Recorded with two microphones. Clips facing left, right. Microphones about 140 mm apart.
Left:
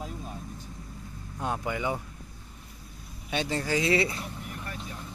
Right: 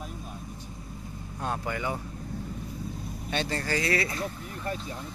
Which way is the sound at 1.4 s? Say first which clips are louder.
Left 1 dB; 15° left (ahead or behind).